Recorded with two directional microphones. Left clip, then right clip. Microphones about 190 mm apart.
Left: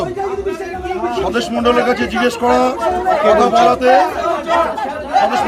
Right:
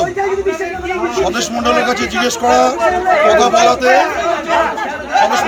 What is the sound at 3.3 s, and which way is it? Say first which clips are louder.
Speech: left 2 dB; 25° left (ahead or behind).